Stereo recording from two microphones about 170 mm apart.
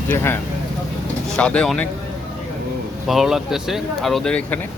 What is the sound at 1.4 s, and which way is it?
Speech, 5° left (ahead or behind).